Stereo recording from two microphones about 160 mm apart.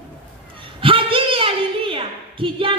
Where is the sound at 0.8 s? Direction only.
35° right (ahead or behind).